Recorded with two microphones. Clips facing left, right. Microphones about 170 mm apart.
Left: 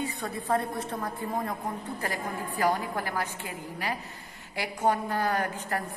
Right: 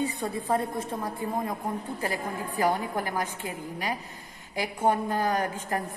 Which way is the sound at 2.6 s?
15° right (ahead or behind).